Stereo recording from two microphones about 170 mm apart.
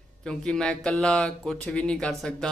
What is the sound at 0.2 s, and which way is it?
Speech, 5° left (ahead or behind).